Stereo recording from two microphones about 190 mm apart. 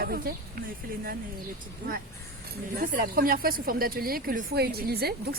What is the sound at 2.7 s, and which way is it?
A woman's voice, 50° right (ahead or behind).